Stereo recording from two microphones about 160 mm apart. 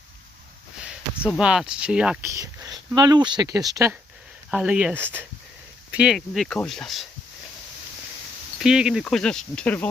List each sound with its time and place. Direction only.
0.8 s a sound: 5° right (ahead or behind)
1.4 s speech: 5° right (ahead or behind)
2.2 s speech: 20° right (ahead or behind)
4.5 s speech: 5° right (ahead or behind)
8.5 s speech: 5° right (ahead or behind)